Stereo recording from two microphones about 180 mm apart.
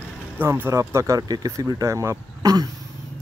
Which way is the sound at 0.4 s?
15° right (ahead or behind).